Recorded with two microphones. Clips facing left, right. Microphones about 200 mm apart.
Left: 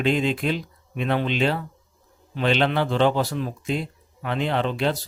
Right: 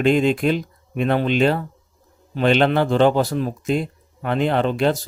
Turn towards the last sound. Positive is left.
turn(degrees=-45)  # may be behind; listen again after turning